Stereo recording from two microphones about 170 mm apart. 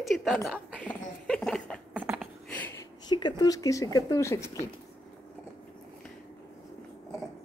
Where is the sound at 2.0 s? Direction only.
10° right (ahead or behind).